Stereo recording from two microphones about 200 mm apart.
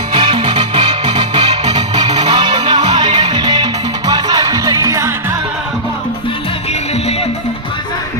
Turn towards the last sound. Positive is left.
turn(degrees=30)  # may be behind; listen again after turning